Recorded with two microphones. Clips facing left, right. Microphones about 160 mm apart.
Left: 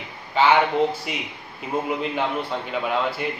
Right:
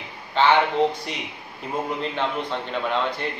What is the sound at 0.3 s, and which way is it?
Speech, 10° left (ahead or behind).